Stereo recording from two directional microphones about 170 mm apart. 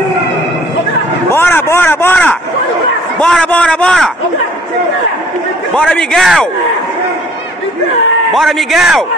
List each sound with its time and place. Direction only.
1.3 s a sound: 15° left (ahead or behind)
5.8 s a man's voice: 5° left (ahead or behind)
8.3 s a man's voice: centre (ahead or behind)